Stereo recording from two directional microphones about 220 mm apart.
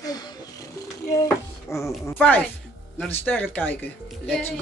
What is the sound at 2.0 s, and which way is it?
A man's voice, 10° left (ahead or behind).